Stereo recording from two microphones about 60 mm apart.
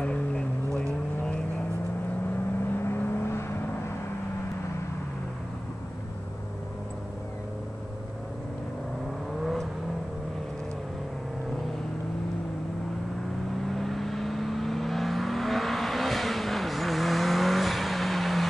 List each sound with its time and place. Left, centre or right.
0.0 s vehicle: centre
2.6 s vehicle: left
9.4 s vehicle: centre
13.7 s vehicle: centre